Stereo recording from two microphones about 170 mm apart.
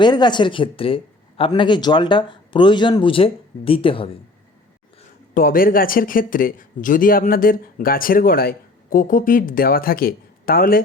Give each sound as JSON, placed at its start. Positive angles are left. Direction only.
{"t": 0.0, "sound": "speech", "side_deg": 25}
{"t": 5.3, "sound": "speech", "side_deg": 55}